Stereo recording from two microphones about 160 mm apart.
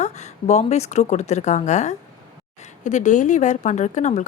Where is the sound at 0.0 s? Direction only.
45° left (ahead or behind).